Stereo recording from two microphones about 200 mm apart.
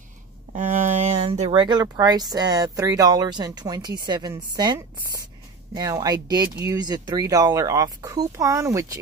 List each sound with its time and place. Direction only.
0.5 s speech: 40° right (ahead or behind); by 9.0 s 15° right (ahead or behind)